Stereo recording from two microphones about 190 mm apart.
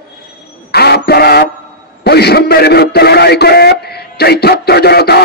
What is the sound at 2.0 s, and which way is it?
A man's voice, 60° left (ahead or behind).